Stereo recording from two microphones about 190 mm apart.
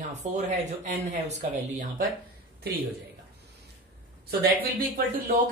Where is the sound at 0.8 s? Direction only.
40° right (ahead or behind).